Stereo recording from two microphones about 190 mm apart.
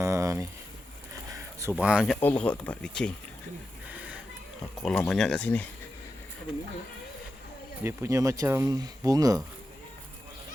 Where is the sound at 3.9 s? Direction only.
5° right (ahead or behind).